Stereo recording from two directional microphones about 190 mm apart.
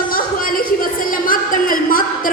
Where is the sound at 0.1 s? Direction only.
50° left (ahead or behind).